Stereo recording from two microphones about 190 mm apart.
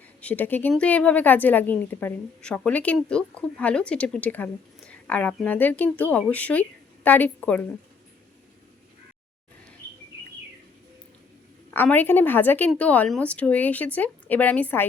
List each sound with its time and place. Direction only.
0.2 s a woman's voice: 10° left (ahead or behind)
11.7 s a woman's voice: 10° left (ahead or behind)